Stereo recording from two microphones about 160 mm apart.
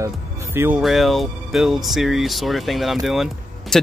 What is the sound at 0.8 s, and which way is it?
Speech, centre (ahead or behind).